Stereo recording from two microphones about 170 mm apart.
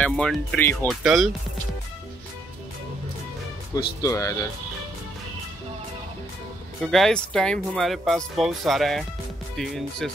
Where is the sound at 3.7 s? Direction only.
20° left (ahead or behind).